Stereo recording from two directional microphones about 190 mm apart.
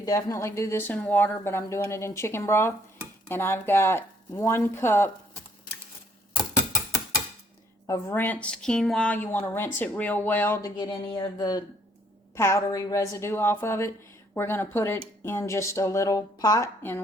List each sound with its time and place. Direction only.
0.0 s a woman's voice: 20° left (ahead or behind)
7.9 s a woman's voice: 15° left (ahead or behind)
10.8 s a woman's voice: 20° left (ahead or behind)